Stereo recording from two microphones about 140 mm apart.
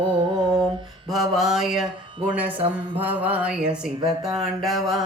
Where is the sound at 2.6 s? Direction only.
40° right (ahead or behind).